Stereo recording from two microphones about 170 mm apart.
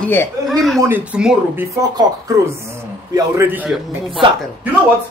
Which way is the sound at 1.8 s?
20° right (ahead or behind).